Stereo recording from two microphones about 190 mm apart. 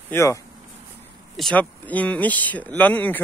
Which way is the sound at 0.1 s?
15° left (ahead or behind).